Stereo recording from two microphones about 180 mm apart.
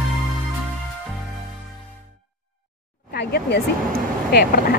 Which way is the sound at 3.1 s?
60° left (ahead or behind).